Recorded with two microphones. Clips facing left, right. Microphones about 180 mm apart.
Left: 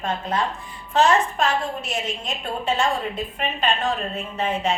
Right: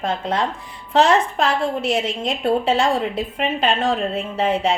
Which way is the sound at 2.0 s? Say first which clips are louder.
Right 8 dB; 90° right.